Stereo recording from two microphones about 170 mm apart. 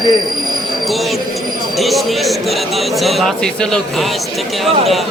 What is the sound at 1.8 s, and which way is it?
Speech, centre (ahead or behind).